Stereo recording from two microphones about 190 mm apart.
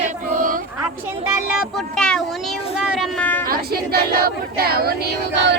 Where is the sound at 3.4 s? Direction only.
50° right (ahead or behind).